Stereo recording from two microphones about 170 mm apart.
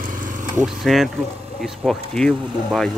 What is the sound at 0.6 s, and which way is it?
Speech, centre (ahead or behind).